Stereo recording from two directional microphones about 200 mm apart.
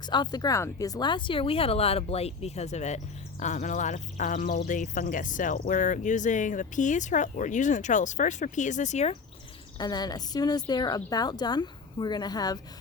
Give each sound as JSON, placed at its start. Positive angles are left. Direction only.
{"t": 0.0, "sound": "speech", "side_deg": 20}
{"t": 9.7, "sound": "speech", "side_deg": 20}